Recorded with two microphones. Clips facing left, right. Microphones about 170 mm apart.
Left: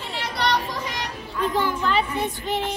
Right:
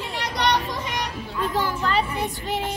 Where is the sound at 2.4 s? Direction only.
5° right (ahead or behind).